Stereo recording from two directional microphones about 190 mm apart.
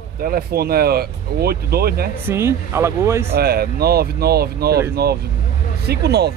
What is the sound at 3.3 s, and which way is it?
Speech, 55° right (ahead or behind).